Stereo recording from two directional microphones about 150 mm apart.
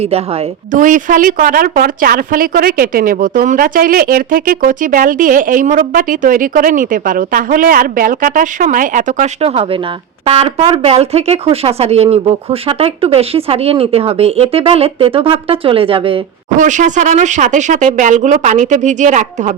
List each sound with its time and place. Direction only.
0.7 s speech: 60° right (ahead or behind); by 16.2 s 35° right (ahead or behind)
16.6 s speech: 55° right (ahead or behind)